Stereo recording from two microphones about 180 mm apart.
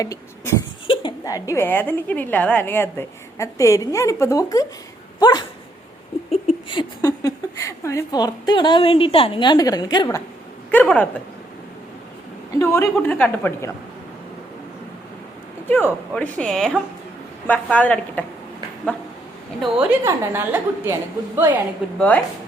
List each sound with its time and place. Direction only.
0.0 s cough: 15° left (ahead or behind)
0.9 s a woman's voice: 25° left (ahead or behind)
5.2 s dog: 25° left (ahead or behind)
6.5 s speech: 25° left (ahead or behind)
10.7 s a woman's voice: 10° left (ahead or behind)
12.5 s a woman's voice: 15° left (ahead or behind)
15.7 s a woman's voice: 10° left (ahead or behind)
19.8 s a woman's voice: 10° right (ahead or behind)
21.9 s a woman's voice: 10° left (ahead or behind)